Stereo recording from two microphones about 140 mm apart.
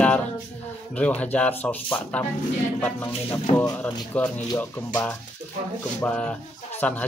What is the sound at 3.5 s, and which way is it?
Speech, 25° left (ahead or behind).